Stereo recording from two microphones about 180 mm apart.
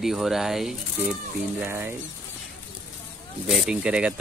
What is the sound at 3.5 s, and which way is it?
Speech, 5° right (ahead or behind).